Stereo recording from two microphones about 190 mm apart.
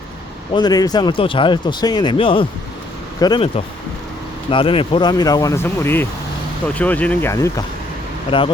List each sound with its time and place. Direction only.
0.5 s speech: 20° left (ahead or behind)
4.5 s speech: 30° left (ahead or behind)